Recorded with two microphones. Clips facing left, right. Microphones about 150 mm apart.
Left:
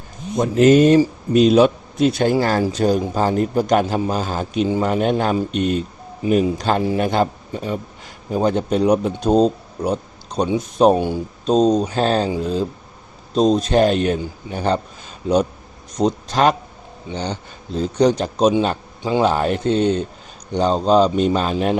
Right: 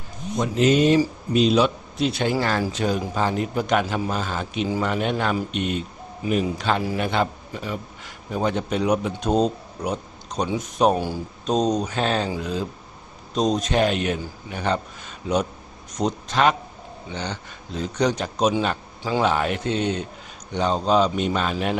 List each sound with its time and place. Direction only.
0.3 s speech: 45° left (ahead or behind)
16.0 s speech: 35° left (ahead or behind)